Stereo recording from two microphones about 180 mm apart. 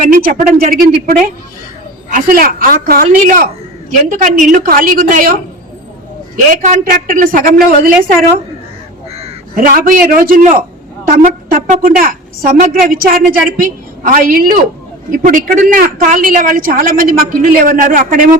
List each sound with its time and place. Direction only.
0.0 s a woman's voice: 50° right (ahead or behind)
6.3 s a woman's voice: 45° right (ahead or behind)
9.6 s a woman's voice: 50° right (ahead or behind)